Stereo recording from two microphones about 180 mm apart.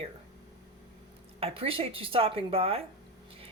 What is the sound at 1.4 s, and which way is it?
Speech, 30° right (ahead or behind).